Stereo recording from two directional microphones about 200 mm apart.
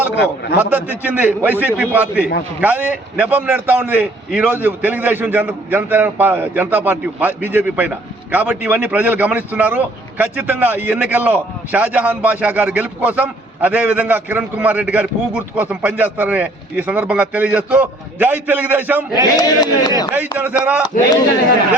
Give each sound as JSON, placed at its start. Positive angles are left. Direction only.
{"t": 0.5, "sound": "a man's voice", "side_deg": -10}
{"t": 19.4, "sound": "a man's voice", "side_deg": 20}
{"t": 20.1, "sound": "a man's voice", "side_deg": -10}